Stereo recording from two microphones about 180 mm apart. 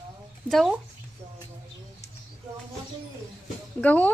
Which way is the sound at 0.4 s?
Centre (ahead or behind).